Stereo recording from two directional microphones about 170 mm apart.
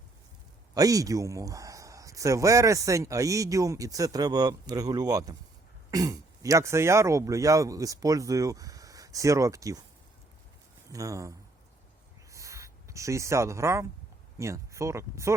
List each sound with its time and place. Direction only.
0.7 s a man's voice: 20° right (ahead or behind)
10.9 s a man's voice: 20° right (ahead or behind)
12.3 s a sound: 20° right (ahead or behind)
14.3 s speech: 15° right (ahead or behind)